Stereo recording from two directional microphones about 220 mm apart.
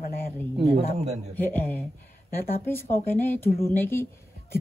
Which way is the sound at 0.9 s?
30° right (ahead or behind).